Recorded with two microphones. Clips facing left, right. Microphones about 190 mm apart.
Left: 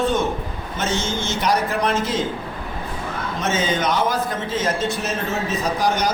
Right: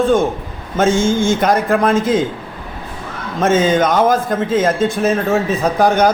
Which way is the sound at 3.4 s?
50° right (ahead or behind).